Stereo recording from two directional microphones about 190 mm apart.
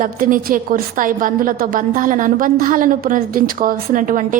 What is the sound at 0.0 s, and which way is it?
A woman's voice, 45° right (ahead or behind).